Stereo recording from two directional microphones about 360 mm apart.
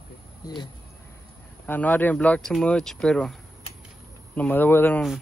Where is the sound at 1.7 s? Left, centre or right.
Centre.